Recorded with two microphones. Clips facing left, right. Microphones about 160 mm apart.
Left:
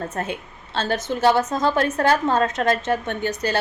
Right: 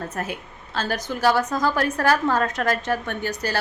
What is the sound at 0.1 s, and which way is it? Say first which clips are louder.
A woman's voice: left 2 dB; 25° left (ahead or behind).